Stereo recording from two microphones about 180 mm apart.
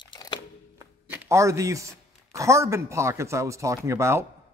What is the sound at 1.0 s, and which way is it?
Speech, 10° right (ahead or behind).